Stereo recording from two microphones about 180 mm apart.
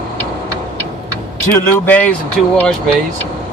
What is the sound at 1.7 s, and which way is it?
Speech, 10° left (ahead or behind).